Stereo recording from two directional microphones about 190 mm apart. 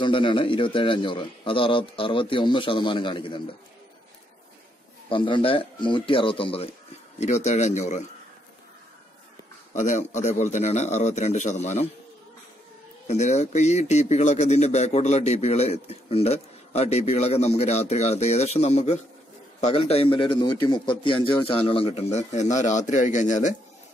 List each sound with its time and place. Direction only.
0.0 s a man's voice: 25° left (ahead or behind)
5.1 s a man's voice: 25° left (ahead or behind)
9.8 s a man's voice: 40° left (ahead or behind)
13.0 s a man's voice: 35° left (ahead or behind)